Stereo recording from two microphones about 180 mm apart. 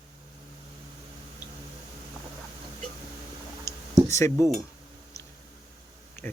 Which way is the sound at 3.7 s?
15° left (ahead or behind).